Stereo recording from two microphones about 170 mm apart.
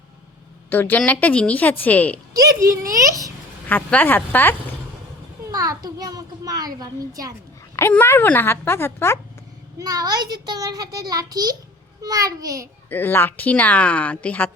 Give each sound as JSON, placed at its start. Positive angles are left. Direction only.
{"t": 0.7, "sound": "a woman's voice", "side_deg": 10}
{"t": 2.3, "sound": "a child's voice", "side_deg": -20}
{"t": 3.7, "sound": "a woman's voice", "side_deg": 10}
{"t": 5.5, "sound": "a child's voice", "side_deg": -20}
{"t": 7.8, "sound": "a woman's voice", "side_deg": 15}
{"t": 9.7, "sound": "a child's voice", "side_deg": -20}
{"t": 12.9, "sound": "a woman's voice", "side_deg": 10}